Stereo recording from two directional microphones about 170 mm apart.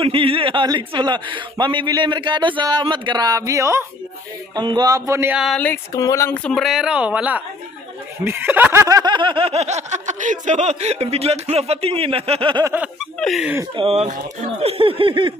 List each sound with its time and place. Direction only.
0.0 s a man's voice: 30° right (ahead or behind); by 5.4 s 15° right (ahead or behind)
5.6 s speech: 10° left (ahead or behind); by 7.4 s 10° right (ahead or behind)
8.2 s snicker: 15° right (ahead or behind); by 12.6 s 30° right (ahead or behind)
12.6 s speech: 10° right (ahead or behind)
13.7 s snicker: 40° right (ahead or behind)